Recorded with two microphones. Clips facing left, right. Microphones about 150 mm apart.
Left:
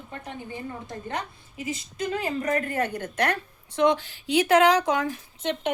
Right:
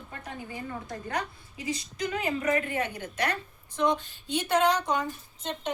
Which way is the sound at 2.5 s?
45° left (ahead or behind).